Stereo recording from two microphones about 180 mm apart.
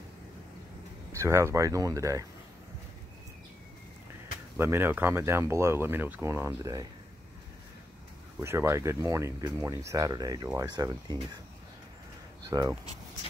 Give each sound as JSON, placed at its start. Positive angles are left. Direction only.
{"t": 1.1, "sound": "speech", "side_deg": -15}
{"t": 4.6, "sound": "speech", "side_deg": -15}
{"t": 8.4, "sound": "speech", "side_deg": -15}
{"t": 12.4, "sound": "speech", "side_deg": -20}